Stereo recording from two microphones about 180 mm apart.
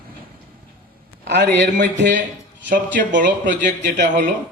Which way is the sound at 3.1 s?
45° right (ahead or behind).